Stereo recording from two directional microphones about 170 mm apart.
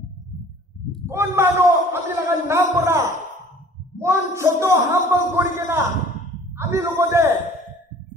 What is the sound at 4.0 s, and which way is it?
A man's voice, 15° right (ahead or behind).